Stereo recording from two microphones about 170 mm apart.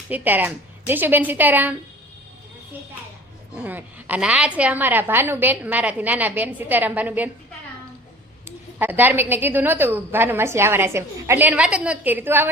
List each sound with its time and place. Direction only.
0.1 s a woman's voice: 10° right (ahead or behind)
3.6 s a woman's voice: 10° right (ahead or behind)
8.4 s a woman's voice: 10° right (ahead or behind)